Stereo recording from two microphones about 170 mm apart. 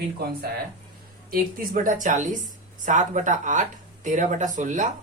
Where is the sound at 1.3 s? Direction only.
55° right (ahead or behind).